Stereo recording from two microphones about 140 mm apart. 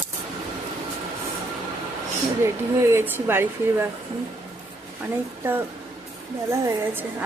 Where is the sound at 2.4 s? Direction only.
20° right (ahead or behind).